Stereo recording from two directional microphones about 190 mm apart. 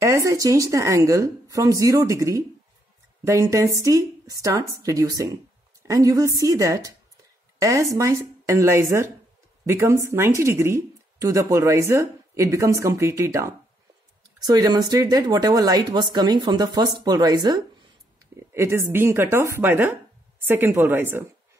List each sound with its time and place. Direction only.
0.0 s speech: 15° right (ahead or behind)